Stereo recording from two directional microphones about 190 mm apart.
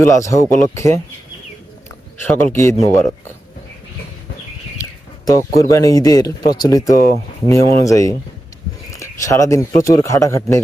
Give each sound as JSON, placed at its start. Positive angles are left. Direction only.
{"t": 0.0, "sound": "speech", "side_deg": 15}
{"t": 2.2, "sound": "speech", "side_deg": 10}
{"t": 4.8, "sound": "speech", "side_deg": 15}